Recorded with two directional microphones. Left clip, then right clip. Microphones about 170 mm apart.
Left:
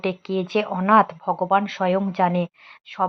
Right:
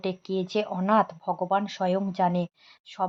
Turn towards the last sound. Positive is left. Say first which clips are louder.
# left 7 dB
turn(degrees=15)  # may be behind; listen again after turning